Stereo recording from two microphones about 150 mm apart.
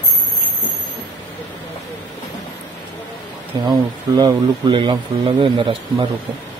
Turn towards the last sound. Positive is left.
turn(degrees=-35)  # may be behind; listen again after turning